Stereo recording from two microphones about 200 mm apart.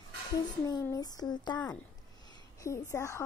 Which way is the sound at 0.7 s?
20° left (ahead or behind).